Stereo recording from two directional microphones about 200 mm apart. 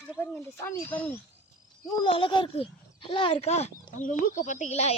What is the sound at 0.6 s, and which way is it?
Speech, 10° left (ahead or behind).